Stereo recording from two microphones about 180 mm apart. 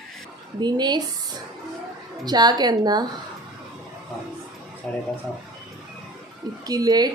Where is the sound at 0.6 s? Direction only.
25° right (ahead or behind).